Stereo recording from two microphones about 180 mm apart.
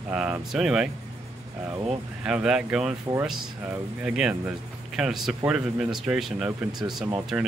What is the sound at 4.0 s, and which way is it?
Speech, 5° right (ahead or behind).